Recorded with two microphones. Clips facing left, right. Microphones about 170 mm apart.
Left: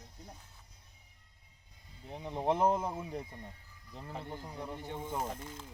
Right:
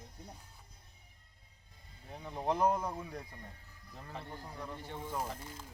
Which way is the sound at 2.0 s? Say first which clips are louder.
Left 3 dB; 20° left (ahead or behind).